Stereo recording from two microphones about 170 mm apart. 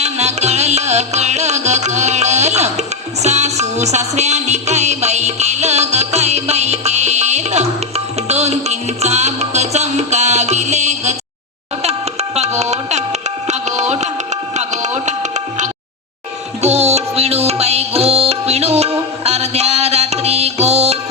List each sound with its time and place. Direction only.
0.0 s music: 40° right (ahead or behind)